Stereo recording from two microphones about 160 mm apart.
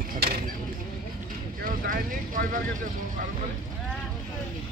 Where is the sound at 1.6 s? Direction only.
60° right (ahead or behind).